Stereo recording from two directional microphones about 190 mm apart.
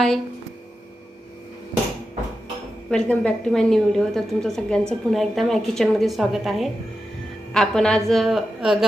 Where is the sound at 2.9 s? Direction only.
5° left (ahead or behind).